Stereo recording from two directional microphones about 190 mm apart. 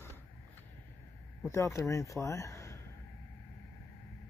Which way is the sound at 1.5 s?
15° left (ahead or behind).